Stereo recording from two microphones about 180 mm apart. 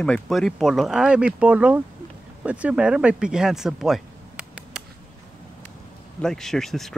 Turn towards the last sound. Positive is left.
turn(degrees=0)  # may be behind; listen again after turning